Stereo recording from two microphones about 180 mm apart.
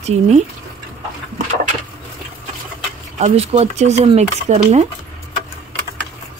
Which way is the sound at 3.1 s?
35° right (ahead or behind).